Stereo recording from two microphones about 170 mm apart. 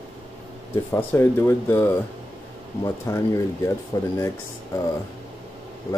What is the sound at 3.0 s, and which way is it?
Speech, 20° left (ahead or behind).